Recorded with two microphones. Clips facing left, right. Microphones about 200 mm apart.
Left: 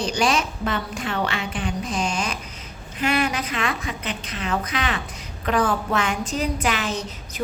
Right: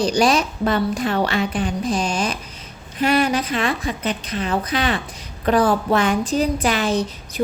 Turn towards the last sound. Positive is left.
turn(degrees=-35)  # may be behind; listen again after turning